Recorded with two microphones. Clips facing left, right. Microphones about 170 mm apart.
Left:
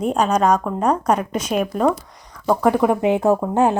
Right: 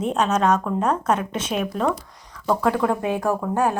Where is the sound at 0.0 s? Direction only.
10° left (ahead or behind).